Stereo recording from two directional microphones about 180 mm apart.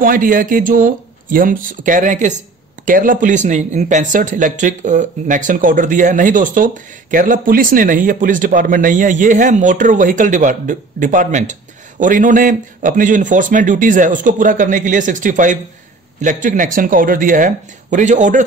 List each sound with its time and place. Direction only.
0.0 s speech: 50° right (ahead or behind)